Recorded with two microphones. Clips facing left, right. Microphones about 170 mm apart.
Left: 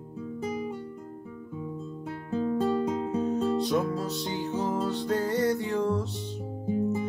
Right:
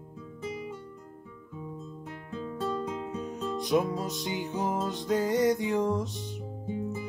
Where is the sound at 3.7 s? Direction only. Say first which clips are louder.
Even; 15° right (ahead or behind).